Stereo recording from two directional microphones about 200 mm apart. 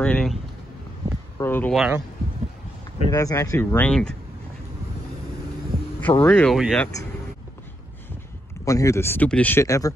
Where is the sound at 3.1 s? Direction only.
15° left (ahead or behind).